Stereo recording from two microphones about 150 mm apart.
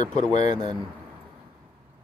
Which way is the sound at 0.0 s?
55° left (ahead or behind).